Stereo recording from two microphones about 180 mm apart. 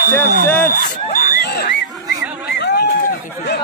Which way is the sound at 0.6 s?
45° left (ahead or behind).